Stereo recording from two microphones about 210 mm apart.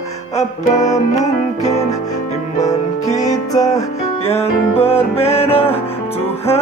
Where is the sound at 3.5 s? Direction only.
15° left (ahead or behind).